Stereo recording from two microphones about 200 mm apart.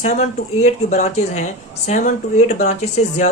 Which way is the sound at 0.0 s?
35° left (ahead or behind).